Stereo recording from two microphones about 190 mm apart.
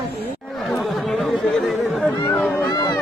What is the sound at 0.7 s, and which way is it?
Chatter, centre (ahead or behind).